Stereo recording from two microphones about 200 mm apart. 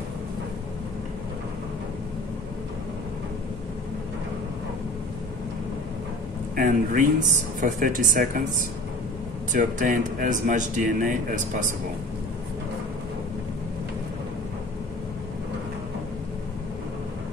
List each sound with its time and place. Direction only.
6.5 s a man's voice: 45° right (ahead or behind)
9.5 s a man's voice: 40° right (ahead or behind)